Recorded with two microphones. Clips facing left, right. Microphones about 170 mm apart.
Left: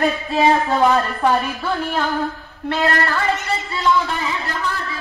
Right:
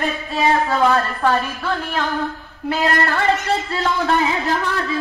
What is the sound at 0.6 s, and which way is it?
A woman's voice, 15° left (ahead or behind).